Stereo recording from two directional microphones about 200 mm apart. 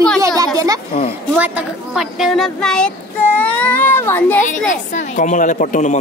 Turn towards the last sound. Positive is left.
turn(degrees=35)  # may be behind; listen again after turning